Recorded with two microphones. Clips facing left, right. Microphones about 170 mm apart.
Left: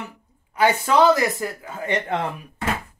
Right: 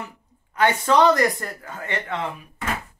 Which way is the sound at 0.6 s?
5° left (ahead or behind).